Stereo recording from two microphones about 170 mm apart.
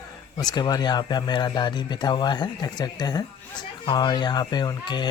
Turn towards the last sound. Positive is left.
turn(degrees=25)  # may be behind; listen again after turning